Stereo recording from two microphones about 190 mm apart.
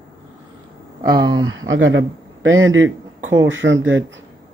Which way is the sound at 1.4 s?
90° right.